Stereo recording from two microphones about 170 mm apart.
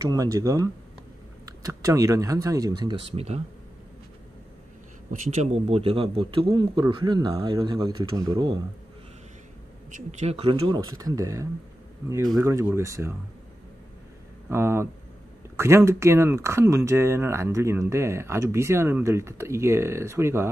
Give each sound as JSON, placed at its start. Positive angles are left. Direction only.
{"t": 0.0, "sound": "a man's voice", "side_deg": -20}
{"t": 5.2, "sound": "a man's voice", "side_deg": -40}
{"t": 9.8, "sound": "speech", "side_deg": -45}
{"t": 14.5, "sound": "speech", "side_deg": -15}